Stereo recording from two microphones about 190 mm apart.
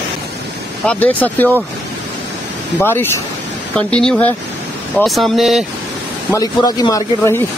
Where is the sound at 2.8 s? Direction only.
10° left (ahead or behind).